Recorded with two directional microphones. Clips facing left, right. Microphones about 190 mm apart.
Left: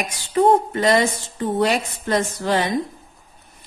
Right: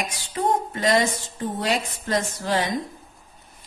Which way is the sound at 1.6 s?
65° left (ahead or behind).